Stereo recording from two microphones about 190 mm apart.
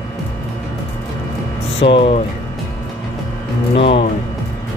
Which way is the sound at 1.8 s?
25° left (ahead or behind).